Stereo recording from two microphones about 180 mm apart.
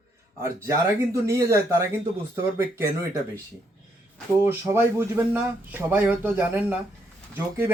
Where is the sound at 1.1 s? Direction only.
15° right (ahead or behind).